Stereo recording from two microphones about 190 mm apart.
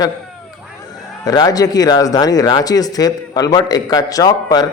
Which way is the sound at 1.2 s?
20° left (ahead or behind).